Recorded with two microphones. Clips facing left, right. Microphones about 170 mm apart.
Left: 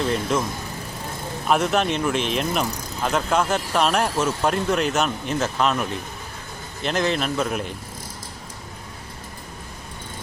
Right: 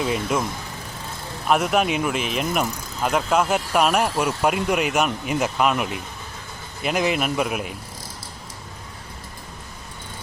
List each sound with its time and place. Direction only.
0.0 s speech: 5° right (ahead or behind)
1.5 s speech: 5° right (ahead or behind)